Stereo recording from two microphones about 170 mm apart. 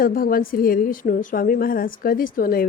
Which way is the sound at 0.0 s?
55° left (ahead or behind).